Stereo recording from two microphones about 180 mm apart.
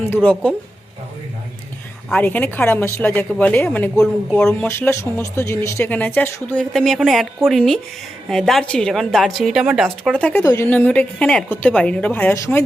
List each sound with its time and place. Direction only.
0.1 s speech: 5° left (ahead or behind)
2.0 s a woman's voice: 10° left (ahead or behind)
10.4 s a woman's voice: 20° left (ahead or behind)
10.7 s speech: 10° left (ahead or behind)